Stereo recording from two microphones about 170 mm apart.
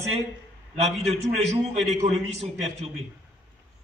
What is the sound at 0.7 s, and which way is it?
A man's voice, 40° right (ahead or behind).